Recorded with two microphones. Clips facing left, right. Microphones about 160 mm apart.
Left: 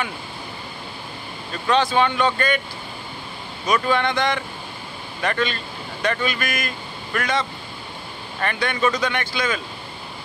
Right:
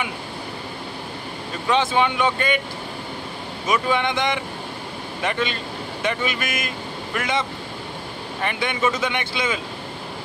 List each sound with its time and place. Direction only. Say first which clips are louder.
1.7 s speech: left 1 dB; 20° right (ahead or behind)
3.6 s speech: left 1 dB; 20° right (ahead or behind)